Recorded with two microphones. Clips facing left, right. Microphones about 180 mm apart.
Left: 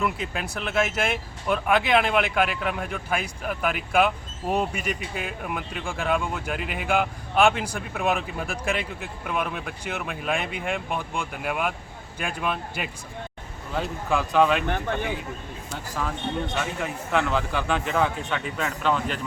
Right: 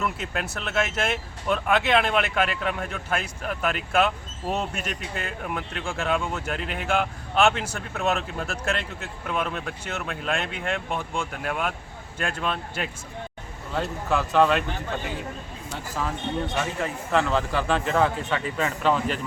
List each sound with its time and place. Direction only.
0.0 s speech: centre (ahead or behind)
7.9 s speech: 10° left (ahead or behind)
15.7 s speech: centre (ahead or behind)